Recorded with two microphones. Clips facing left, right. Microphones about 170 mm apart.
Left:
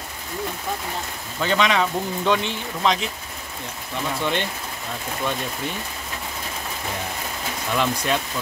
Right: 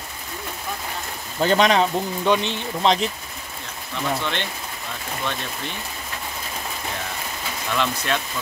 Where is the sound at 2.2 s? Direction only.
15° right (ahead or behind).